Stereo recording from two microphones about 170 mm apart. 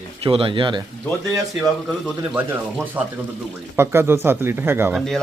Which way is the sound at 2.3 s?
10° right (ahead or behind).